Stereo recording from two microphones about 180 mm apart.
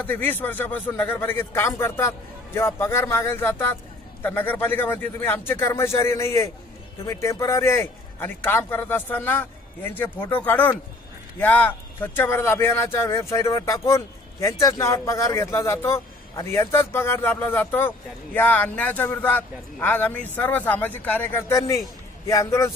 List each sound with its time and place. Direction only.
0.0 s speech: 10° left (ahead or behind)